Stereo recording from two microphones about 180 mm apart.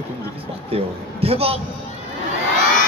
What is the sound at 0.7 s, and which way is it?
Speech, 35° right (ahead or behind).